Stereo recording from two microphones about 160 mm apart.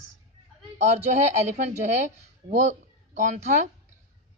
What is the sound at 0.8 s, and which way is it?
Speech, 45° right (ahead or behind).